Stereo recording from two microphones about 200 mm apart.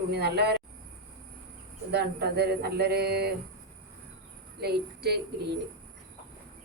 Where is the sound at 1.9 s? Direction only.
55° right (ahead or behind).